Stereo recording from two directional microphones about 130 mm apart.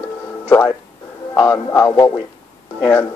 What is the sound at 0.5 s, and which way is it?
Speech, 10° left (ahead or behind).